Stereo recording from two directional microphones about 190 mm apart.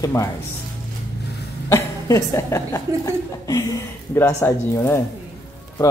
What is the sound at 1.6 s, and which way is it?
Speech, 15° left (ahead or behind).